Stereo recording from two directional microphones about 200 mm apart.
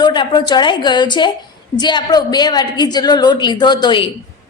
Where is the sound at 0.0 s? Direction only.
20° left (ahead or behind).